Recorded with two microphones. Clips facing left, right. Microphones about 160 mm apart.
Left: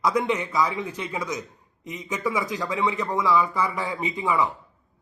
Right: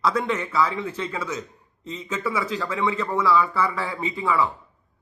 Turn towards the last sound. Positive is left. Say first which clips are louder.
# right 1 dB
turn(degrees=20)  # may be behind; listen again after turning